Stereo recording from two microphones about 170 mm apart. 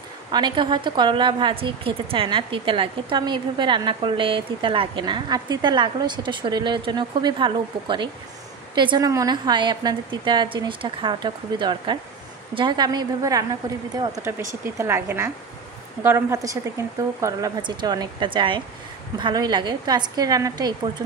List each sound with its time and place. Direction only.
0.3 s a woman's voice: 25° right (ahead or behind)